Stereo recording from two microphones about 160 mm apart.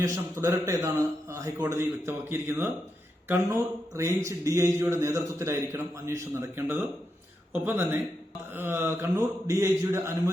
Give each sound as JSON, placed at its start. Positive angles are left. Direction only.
{"t": 0.0, "sound": "speech", "side_deg": -20}